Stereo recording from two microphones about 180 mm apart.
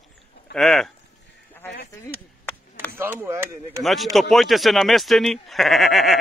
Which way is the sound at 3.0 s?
10° right (ahead or behind).